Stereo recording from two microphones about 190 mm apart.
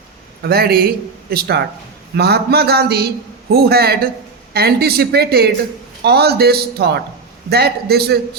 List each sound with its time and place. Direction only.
0.4 s speech: 55° right (ahead or behind)